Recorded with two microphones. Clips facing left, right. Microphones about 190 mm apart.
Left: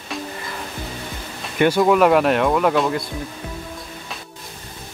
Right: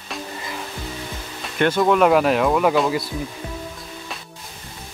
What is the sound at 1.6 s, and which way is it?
Speech, 5° left (ahead or behind).